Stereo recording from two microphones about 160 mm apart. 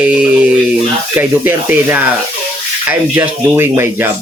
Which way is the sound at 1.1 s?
15° right (ahead or behind).